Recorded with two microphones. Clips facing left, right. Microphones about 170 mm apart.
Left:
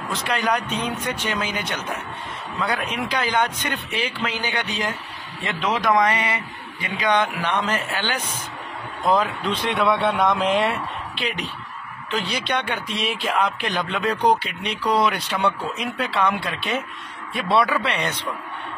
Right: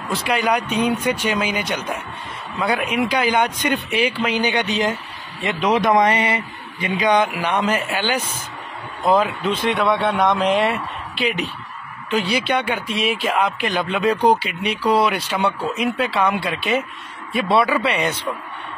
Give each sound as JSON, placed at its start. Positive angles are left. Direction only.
{"t": 0.1, "sound": "speech", "side_deg": -10}